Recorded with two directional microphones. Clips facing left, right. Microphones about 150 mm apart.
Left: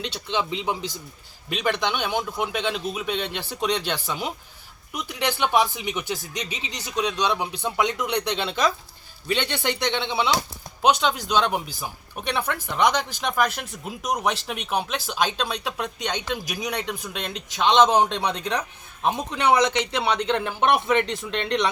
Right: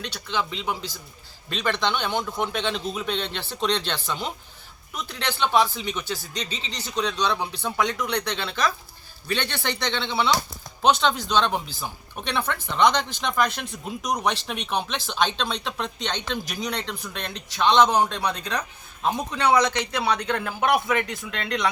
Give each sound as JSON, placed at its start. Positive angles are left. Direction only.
{"t": 0.0, "sound": "speech", "side_deg": 20}